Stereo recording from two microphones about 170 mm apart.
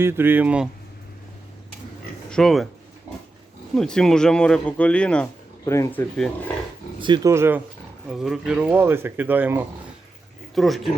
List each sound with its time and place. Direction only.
0.0 s speech: 15° right (ahead or behind)
2.3 s speech: centre (ahead or behind)
3.8 s speech: 5° left (ahead or behind)
7.0 s speech: 25° right (ahead or behind)
8.1 s speech: centre (ahead or behind)
10.5 s speech: centre (ahead or behind)